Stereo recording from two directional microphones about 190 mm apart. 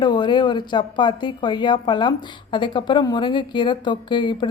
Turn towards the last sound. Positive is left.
turn(degrees=25)  # may be behind; listen again after turning